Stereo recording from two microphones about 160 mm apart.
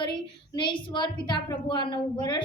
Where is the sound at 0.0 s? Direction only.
30° left (ahead or behind).